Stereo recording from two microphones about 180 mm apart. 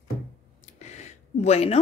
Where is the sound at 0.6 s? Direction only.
40° left (ahead or behind).